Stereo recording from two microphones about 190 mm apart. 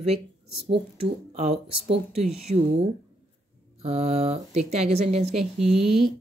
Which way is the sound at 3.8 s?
35° right (ahead or behind).